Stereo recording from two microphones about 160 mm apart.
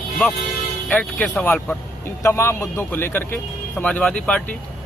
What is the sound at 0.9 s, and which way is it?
A man's voice, 10° left (ahead or behind).